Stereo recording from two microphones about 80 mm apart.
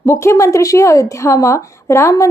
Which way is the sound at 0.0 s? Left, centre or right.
Left.